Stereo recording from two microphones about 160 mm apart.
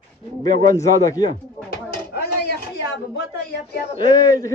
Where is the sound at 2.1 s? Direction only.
90° left.